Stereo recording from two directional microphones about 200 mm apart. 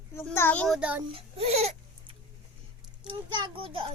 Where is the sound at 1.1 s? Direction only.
30° right (ahead or behind).